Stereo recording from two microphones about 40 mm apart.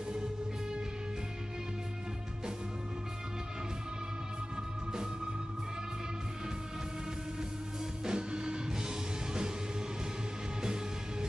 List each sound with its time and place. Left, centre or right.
8.0 s music: right
10.6 s music: centre